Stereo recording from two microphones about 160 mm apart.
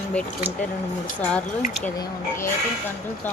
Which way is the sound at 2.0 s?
15° left (ahead or behind).